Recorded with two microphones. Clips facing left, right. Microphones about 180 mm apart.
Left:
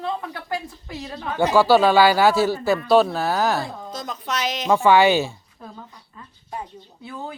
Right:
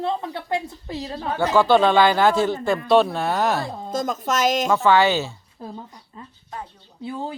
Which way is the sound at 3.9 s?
45° right (ahead or behind).